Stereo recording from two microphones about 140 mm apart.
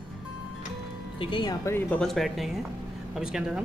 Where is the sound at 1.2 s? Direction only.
30° left (ahead or behind).